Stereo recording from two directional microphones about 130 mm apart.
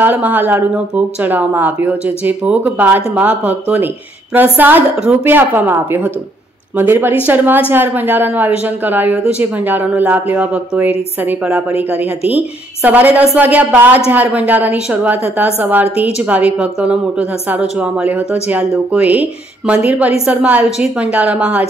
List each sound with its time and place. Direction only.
0.0 s speech: 15° right (ahead or behind)